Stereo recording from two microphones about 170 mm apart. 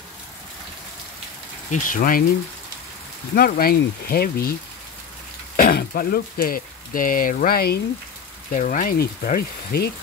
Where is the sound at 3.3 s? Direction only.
60° left (ahead or behind).